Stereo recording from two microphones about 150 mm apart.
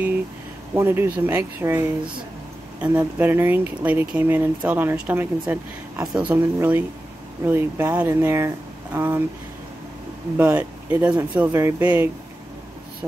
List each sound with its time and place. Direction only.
0.7 s speech: 15° right (ahead or behind)
3.2 s speech: 15° right (ahead or behind)
10.3 s speech: 15° right (ahead or behind)